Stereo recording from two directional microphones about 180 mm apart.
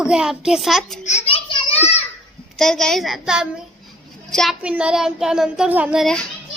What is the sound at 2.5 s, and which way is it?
A child's voice, 5° left (ahead or behind).